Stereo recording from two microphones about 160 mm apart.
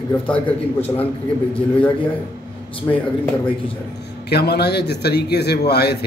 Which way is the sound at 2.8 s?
25° left (ahead or behind).